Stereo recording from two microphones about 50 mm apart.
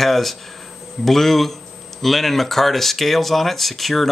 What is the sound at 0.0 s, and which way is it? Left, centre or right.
Speech, centre.